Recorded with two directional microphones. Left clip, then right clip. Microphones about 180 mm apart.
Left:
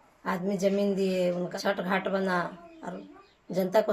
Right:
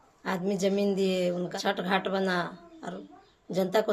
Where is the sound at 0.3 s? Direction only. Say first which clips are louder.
Left 1 dB; 20° right (ahead or behind).